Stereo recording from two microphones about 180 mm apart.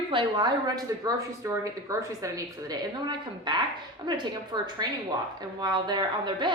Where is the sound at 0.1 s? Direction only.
25° right (ahead or behind).